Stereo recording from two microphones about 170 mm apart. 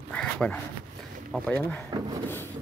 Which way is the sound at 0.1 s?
5° left (ahead or behind).